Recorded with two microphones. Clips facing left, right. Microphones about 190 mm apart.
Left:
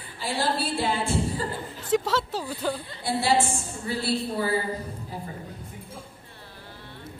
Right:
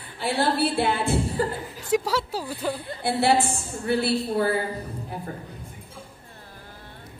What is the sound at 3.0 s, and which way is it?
A woman's voice, 60° right (ahead or behind).